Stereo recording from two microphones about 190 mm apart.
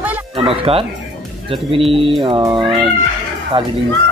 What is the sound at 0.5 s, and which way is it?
Speech, 30° right (ahead or behind).